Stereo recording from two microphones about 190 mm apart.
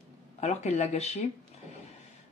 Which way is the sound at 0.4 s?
35° left (ahead or behind).